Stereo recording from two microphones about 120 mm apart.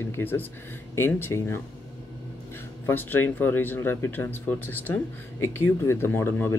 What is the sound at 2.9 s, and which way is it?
Speech, 15° left (ahead or behind).